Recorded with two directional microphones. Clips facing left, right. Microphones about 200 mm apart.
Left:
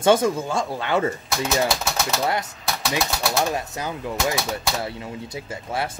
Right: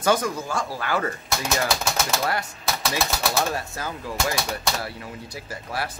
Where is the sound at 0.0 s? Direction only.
25° left (ahead or behind).